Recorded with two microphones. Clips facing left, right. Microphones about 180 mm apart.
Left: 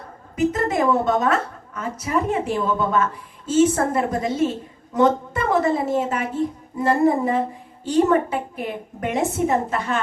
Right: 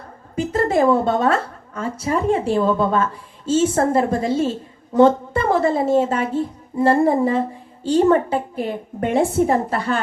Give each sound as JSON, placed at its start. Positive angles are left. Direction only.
{"t": 0.3, "sound": "a woman's voice", "side_deg": -30}